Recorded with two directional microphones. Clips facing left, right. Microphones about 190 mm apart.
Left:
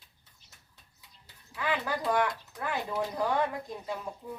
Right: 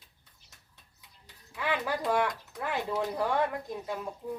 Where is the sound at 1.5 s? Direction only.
5° right (ahead or behind).